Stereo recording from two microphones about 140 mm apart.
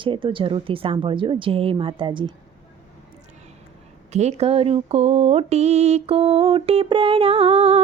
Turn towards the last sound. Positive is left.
turn(degrees=-45)  # may be behind; listen again after turning